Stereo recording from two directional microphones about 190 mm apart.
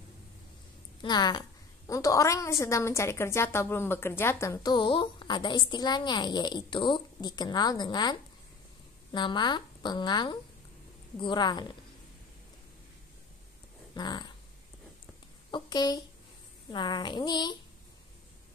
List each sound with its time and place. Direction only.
1.0 s a woman's voice: 20° left (ahead or behind)
13.9 s a woman's voice: 20° left (ahead or behind)
15.5 s a woman's voice: 20° left (ahead or behind)